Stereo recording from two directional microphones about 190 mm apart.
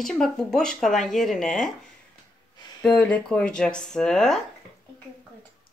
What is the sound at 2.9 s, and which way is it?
Speech, 5° left (ahead or behind).